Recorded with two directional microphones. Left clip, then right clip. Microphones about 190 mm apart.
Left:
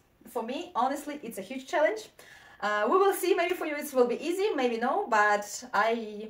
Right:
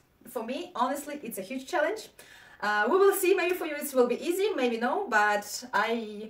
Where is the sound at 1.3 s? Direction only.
15° right (ahead or behind).